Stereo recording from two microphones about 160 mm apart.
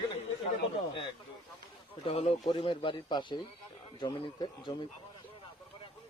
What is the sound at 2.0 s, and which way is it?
A man's voice, 35° left (ahead or behind).